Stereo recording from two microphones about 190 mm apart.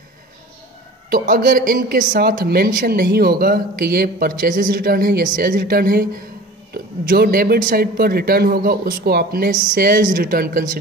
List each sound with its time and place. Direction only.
1.1 s speech: 50° right (ahead or behind)